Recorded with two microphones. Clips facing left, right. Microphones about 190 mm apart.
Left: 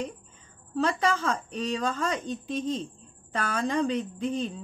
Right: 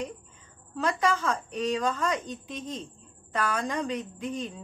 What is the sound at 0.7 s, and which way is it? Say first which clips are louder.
A woman's voice: left 1 dB; 30° left (ahead or behind).